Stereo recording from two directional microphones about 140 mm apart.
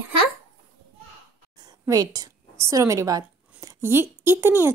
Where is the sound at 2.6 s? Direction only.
20° right (ahead or behind).